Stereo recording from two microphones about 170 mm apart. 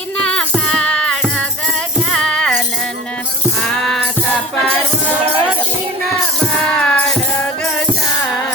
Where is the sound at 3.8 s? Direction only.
Centre (ahead or behind).